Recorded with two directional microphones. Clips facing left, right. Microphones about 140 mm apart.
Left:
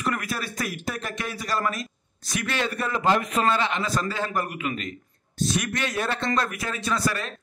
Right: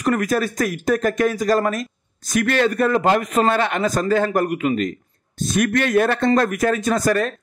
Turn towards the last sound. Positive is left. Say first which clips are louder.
# right 8 dB
turn(degrees=-45)  # may be behind; listen again after turning